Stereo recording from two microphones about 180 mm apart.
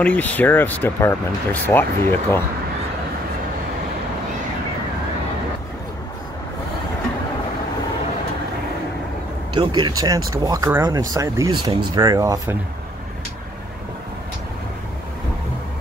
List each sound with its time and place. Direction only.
0.0 s speech: 10° left (ahead or behind)
9.6 s speech: 25° right (ahead or behind)